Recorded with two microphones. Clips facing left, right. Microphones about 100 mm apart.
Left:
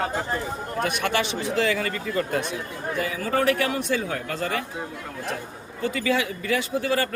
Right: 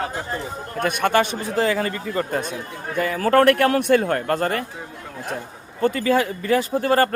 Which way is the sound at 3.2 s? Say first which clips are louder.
Right 8 dB; 70° right (ahead or behind).